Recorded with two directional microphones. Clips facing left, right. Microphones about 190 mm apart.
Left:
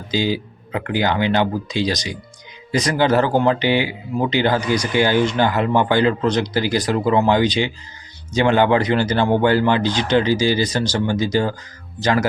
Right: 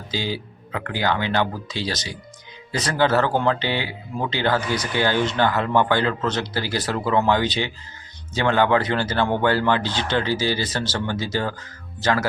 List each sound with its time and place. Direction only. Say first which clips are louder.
0.1 s speech: left 7 dB; 15° left (ahead or behind)